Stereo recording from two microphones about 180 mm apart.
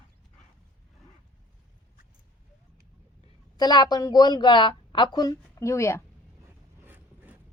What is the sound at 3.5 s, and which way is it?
A woman's voice, 25° left (ahead or behind).